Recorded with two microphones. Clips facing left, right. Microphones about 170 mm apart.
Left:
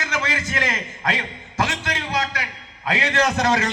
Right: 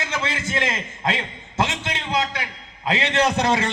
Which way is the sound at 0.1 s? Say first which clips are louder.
Left 2 dB; 25° right (ahead or behind).